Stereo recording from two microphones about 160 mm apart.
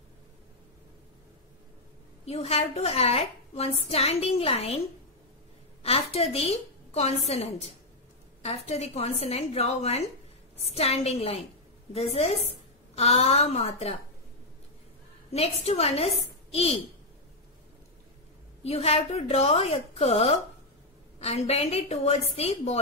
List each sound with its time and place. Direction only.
2.2 s a woman's voice: 40° left (ahead or behind)
5.8 s a woman's voice: 40° left (ahead or behind)
15.3 s a woman's voice: 40° left (ahead or behind)
18.6 s a woman's voice: 40° left (ahead or behind)